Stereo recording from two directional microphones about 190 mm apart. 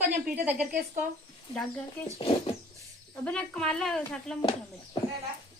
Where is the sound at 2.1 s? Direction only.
30° left (ahead or behind).